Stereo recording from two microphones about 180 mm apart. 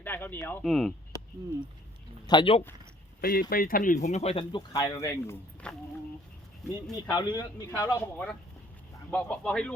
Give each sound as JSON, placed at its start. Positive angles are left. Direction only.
{"t": 0.0, "sound": "speech", "side_deg": 10}
{"t": 2.2, "sound": "speech", "side_deg": 25}
{"t": 3.2, "sound": "speech", "side_deg": 55}
{"t": 6.9, "sound": "speech", "side_deg": 25}